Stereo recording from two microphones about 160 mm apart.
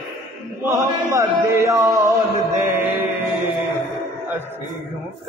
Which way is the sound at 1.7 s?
15° right (ahead or behind).